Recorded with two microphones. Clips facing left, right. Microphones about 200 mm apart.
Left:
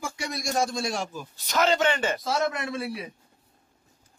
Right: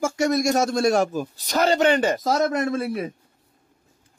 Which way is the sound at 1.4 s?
35° right (ahead or behind).